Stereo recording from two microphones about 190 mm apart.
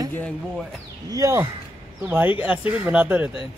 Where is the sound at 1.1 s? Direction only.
15° right (ahead or behind).